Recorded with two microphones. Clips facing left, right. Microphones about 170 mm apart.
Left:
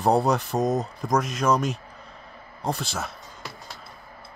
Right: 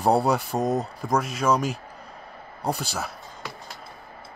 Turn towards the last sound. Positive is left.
turn(degrees=-5)  # may be behind; listen again after turning